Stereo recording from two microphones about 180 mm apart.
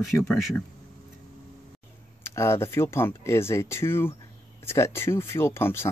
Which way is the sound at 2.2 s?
15° left (ahead or behind).